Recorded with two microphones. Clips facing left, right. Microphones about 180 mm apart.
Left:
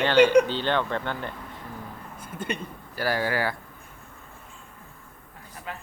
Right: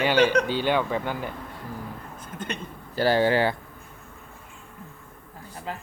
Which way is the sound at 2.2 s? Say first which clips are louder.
Left 3 dB; 10° left (ahead or behind).